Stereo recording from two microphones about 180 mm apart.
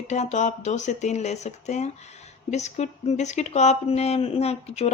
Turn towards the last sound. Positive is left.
turn(degrees=35)  # may be behind; listen again after turning